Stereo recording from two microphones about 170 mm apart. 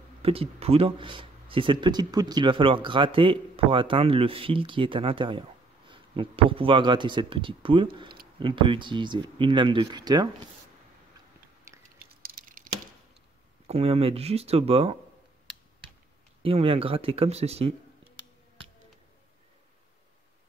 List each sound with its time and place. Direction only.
0.2 s speech: 35° right (ahead or behind)
11.7 s squish: 15° right (ahead or behind)
12.1 s a sound: 60° right (ahead or behind)
13.7 s speech: 35° right (ahead or behind)
16.4 s speech: 35° right (ahead or behind)